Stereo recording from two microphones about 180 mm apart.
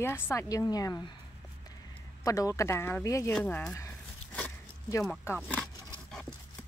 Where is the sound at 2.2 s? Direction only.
20° left (ahead or behind).